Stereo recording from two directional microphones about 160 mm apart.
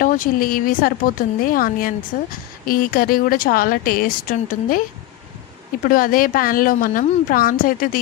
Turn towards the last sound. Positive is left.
turn(degrees=60)  # may be behind; listen again after turning